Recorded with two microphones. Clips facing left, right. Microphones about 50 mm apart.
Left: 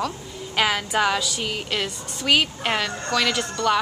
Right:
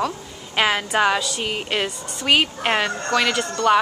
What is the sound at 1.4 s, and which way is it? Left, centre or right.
A woman's voice, right.